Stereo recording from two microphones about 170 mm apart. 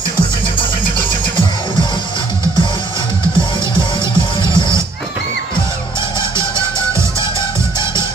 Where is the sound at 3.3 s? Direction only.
30° left (ahead or behind).